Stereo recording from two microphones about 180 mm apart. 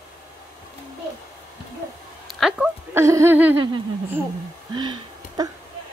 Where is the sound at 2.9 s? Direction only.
15° right (ahead or behind).